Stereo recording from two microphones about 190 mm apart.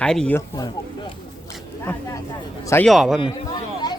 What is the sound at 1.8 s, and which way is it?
Speech, 10° left (ahead or behind).